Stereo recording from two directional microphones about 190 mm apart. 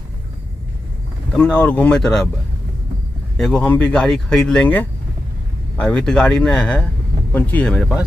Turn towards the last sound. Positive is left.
turn(degrees=5)  # may be behind; listen again after turning